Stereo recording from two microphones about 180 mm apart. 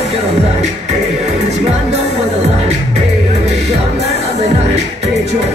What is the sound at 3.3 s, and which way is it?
Music, 35° right (ahead or behind).